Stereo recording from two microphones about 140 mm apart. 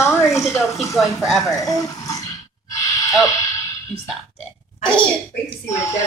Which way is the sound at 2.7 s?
25° left (ahead or behind).